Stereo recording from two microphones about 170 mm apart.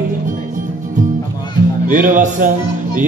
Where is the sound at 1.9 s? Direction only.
50° right (ahead or behind).